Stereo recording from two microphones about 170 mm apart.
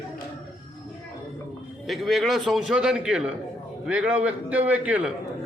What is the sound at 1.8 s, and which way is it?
A man's voice, centre (ahead or behind).